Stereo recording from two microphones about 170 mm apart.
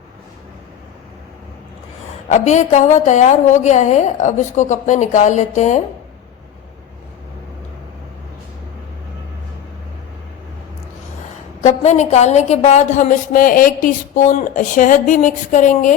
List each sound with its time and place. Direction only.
2.3 s a woman's voice: 45° left (ahead or behind)
11.6 s a woman's voice: 45° left (ahead or behind)